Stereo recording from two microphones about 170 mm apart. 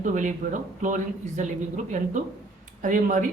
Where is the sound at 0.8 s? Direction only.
45° right (ahead or behind).